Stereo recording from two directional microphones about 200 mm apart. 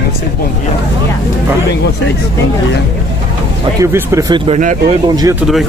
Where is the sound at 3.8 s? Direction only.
15° right (ahead or behind).